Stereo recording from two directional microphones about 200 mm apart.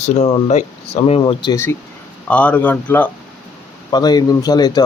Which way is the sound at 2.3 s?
5° left (ahead or behind).